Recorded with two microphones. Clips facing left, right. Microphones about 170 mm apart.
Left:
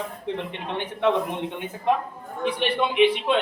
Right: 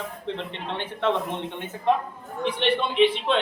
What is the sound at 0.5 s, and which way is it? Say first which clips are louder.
A man's voice: left 2 dB; 15° left (ahead or behind).